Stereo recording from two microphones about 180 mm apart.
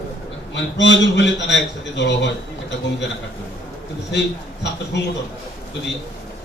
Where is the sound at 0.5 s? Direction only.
85° left.